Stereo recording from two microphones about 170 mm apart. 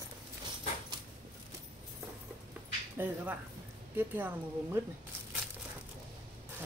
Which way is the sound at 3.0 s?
10° right (ahead or behind).